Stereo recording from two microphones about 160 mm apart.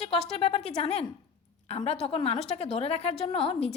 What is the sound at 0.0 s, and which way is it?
A woman's voice, 40° left (ahead or behind).